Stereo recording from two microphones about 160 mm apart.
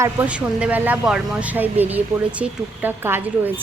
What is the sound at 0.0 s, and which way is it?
A woman's voice, 10° right (ahead or behind).